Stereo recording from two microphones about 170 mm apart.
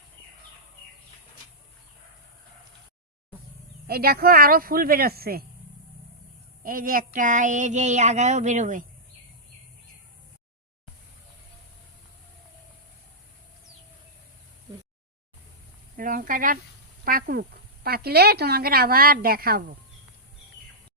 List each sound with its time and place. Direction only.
3.8 s speech: 65° right (ahead or behind)
6.6 s child singing: 55° right (ahead or behind)
16.0 s sizzle: 55° right (ahead or behind)
17.1 s speech: 60° right (ahead or behind)